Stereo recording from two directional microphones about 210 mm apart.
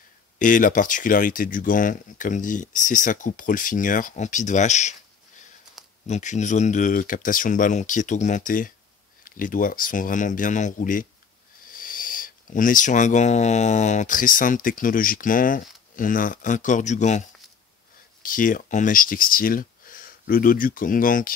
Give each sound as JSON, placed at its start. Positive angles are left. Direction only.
{"t": 0.4, "sound": "speech", "side_deg": 40}
{"t": 6.0, "sound": "speech", "side_deg": 35}
{"t": 18.2, "sound": "speech", "side_deg": 40}